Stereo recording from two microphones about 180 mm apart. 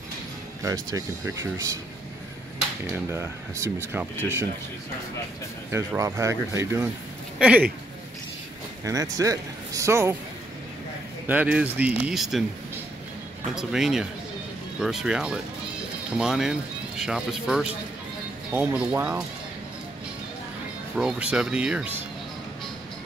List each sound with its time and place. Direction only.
0.6 s speech: 20° right (ahead or behind)
2.9 s speech: 15° right (ahead or behind)
5.7 s speech: 15° right (ahead or behind)
8.8 s speech: 20° right (ahead or behind)
11.2 s speech: 10° right (ahead or behind)
13.6 s speech: 5° right (ahead or behind)
20.9 s speech: 5° right (ahead or behind)